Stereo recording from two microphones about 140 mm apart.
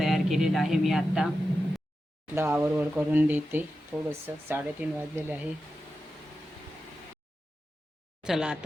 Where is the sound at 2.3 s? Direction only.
15° right (ahead or behind).